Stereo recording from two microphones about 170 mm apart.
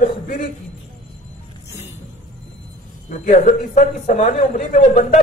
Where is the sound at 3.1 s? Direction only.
45° left (ahead or behind).